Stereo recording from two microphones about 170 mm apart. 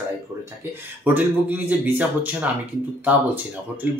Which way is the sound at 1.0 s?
10° right (ahead or behind).